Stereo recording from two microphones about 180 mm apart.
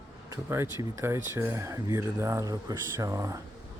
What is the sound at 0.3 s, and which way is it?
Speech, 15° right (ahead or behind).